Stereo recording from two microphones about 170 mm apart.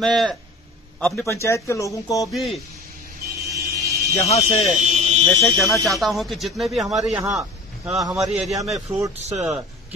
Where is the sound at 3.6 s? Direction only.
65° right (ahead or behind).